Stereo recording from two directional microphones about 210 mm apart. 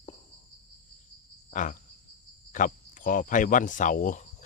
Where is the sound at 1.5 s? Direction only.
40° left (ahead or behind).